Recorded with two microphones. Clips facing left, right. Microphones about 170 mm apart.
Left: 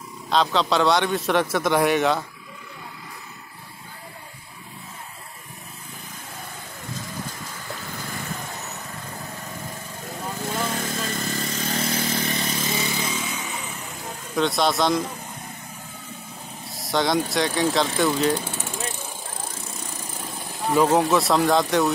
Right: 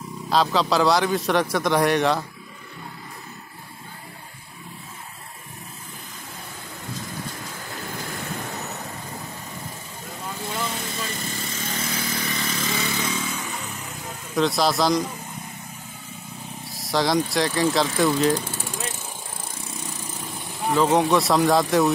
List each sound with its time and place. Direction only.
0.3 s a man's voice: centre (ahead or behind)
10.6 s motorcycle: 45° left (ahead or behind); by 12.7 s 25° left (ahead or behind)
12.7 s motorcycle: 15° left (ahead or behind)
13.3 s motorcycle: centre (ahead or behind)
14.3 s a man's voice: centre (ahead or behind)
16.6 s a man's voice: centre (ahead or behind)
20.7 s a man's voice: 5° left (ahead or behind)